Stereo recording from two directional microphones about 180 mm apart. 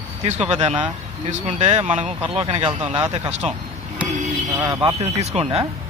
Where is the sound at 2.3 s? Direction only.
25° right (ahead or behind).